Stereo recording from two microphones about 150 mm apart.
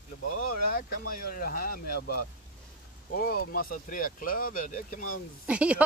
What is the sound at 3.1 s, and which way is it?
Speech, 75° left (ahead or behind).